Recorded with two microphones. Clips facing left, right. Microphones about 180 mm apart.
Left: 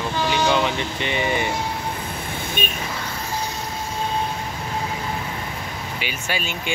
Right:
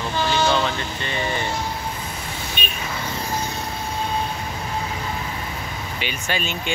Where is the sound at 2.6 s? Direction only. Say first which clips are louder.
Left 5 dB; 50° left (ahead or behind).